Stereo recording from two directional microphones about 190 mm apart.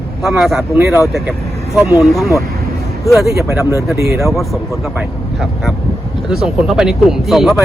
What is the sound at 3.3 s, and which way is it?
Speech, 15° right (ahead or behind).